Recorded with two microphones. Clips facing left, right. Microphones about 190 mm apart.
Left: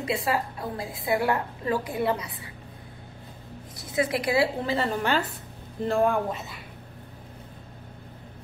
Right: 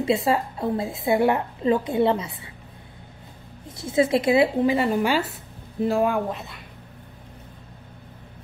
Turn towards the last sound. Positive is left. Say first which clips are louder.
# right 1 dB
turn(degrees=0)  # may be behind; listen again after turning